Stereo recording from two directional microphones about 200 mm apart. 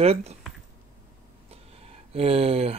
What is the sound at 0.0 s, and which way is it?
Speech, 30° right (ahead or behind).